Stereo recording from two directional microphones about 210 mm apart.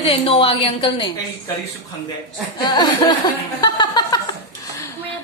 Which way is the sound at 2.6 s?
20° left (ahead or behind).